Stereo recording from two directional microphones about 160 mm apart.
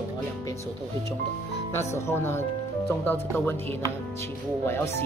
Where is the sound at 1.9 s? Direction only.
15° left (ahead or behind).